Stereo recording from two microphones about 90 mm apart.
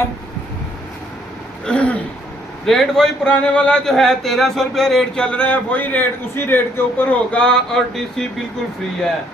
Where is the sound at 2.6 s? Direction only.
5° left (ahead or behind).